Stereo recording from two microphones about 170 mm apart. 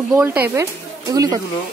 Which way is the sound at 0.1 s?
10° right (ahead or behind).